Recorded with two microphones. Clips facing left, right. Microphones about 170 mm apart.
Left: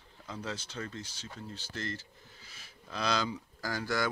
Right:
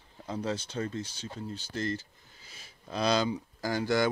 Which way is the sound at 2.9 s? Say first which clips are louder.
Right 5 dB; 30° right (ahead or behind).